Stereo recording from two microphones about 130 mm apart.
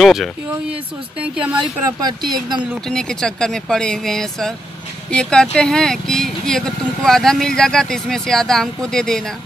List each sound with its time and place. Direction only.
0.0 s speech: centre (ahead or behind)
1.9 s speech: 30° right (ahead or behind)
2.9 s speech: 5° left (ahead or behind)